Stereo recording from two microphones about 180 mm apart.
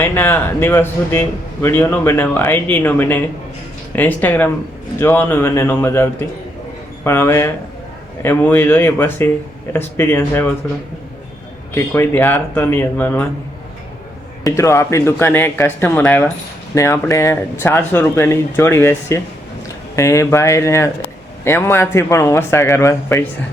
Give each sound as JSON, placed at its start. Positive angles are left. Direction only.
{"t": 0.0, "sound": "speech", "side_deg": 15}
{"t": 11.7, "sound": "speech", "side_deg": 15}
{"t": 14.4, "sound": "speech", "side_deg": 15}